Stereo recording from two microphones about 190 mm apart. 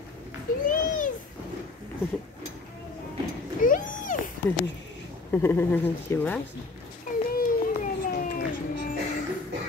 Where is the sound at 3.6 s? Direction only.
45° left (ahead or behind).